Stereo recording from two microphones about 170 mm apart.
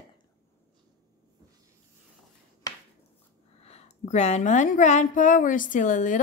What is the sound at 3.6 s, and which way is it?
A woman's voice, 40° left (ahead or behind).